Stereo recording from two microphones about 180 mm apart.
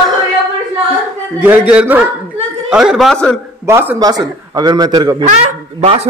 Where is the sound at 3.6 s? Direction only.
15° right (ahead or behind).